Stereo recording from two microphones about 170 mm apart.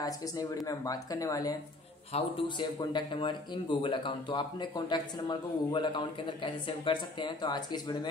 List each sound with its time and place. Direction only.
0.0 s speech: 20° left (ahead or behind)